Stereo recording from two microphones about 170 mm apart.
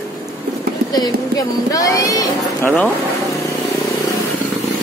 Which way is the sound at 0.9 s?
20° left (ahead or behind).